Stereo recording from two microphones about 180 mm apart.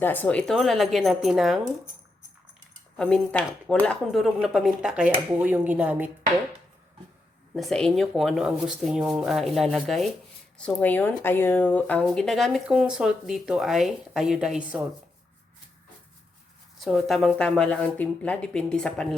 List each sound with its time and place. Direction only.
0.0 s speech: 10° left (ahead or behind)
3.0 s speech: 5° left (ahead or behind)
7.5 s speech: centre (ahead or behind)
16.8 s speech: centre (ahead or behind)